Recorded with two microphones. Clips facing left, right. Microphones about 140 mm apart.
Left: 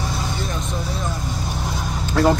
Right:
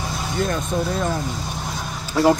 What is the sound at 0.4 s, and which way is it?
Speech, 50° right (ahead or behind).